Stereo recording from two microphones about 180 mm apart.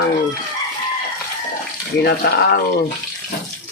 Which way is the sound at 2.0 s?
65° left (ahead or behind).